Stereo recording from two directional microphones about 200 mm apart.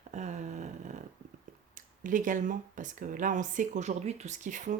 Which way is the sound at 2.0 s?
40° right (ahead or behind).